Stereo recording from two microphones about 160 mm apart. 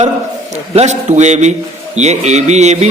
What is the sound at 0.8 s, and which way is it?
A man's voice, 45° right (ahead or behind).